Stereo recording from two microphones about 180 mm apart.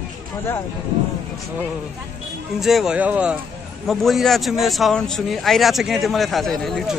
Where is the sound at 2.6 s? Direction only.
Centre (ahead or behind).